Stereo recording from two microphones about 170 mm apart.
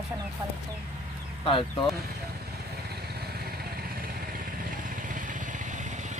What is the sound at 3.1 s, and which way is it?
Vehicle, 70° right (ahead or behind).